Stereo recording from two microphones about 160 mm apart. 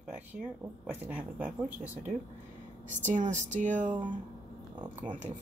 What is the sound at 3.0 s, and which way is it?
Speech, 50° right (ahead or behind).